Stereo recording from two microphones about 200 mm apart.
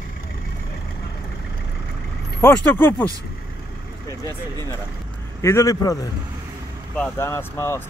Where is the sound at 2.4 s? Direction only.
5° left (ahead or behind).